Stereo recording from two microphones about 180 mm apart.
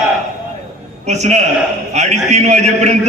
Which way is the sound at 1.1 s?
40° right (ahead or behind).